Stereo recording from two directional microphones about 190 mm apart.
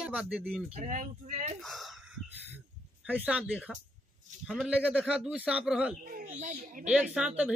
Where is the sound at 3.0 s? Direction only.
10° right (ahead or behind).